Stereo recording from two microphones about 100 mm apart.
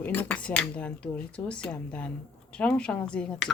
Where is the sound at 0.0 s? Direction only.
20° left (ahead or behind).